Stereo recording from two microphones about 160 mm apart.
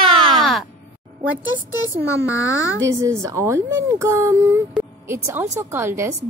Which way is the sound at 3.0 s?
20° right (ahead or behind).